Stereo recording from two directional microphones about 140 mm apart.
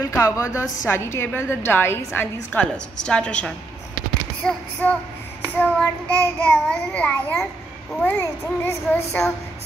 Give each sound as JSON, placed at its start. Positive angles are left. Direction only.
{"t": 0.0, "sound": "a woman's voice", "side_deg": 25}
{"t": 1.7, "sound": "child singing", "side_deg": 15}